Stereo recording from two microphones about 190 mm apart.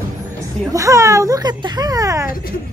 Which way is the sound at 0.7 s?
15° right (ahead or behind).